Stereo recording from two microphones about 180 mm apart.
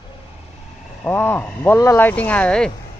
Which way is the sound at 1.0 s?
10° left (ahead or behind).